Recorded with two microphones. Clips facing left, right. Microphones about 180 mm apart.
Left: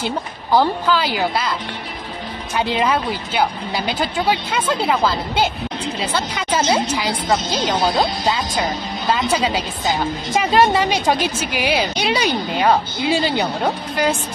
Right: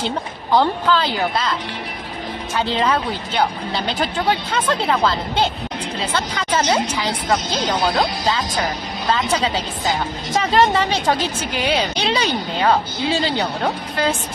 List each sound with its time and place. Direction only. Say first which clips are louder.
0.0 s a woman's voice: even; 10° left (ahead or behind)
2.5 s a woman's voice: left 1 dB; 15° left (ahead or behind)
7.9 s speech: left 1 dB; 20° left (ahead or behind)
9.1 s a woman's voice: left 1 dB; 10° left (ahead or behind)